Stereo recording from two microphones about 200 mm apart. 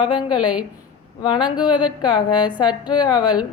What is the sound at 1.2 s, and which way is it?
Speech, 25° left (ahead or behind).